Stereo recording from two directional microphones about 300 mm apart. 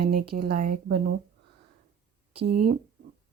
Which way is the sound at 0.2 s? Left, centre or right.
Right.